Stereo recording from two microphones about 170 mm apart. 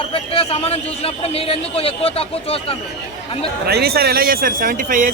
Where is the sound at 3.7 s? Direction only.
70° right (ahead or behind); by 5.1 s 50° right (ahead or behind).